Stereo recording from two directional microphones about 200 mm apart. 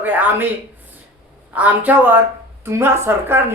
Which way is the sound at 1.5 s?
10° right (ahead or behind).